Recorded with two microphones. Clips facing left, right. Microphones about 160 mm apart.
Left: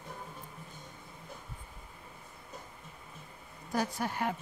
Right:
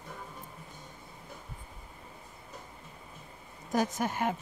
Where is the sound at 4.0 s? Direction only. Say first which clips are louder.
Right 3 dB; 20° right (ahead or behind).